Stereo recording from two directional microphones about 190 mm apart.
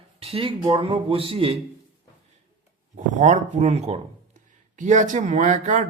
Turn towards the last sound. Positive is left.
turn(degrees=-40)  # may be behind; listen again after turning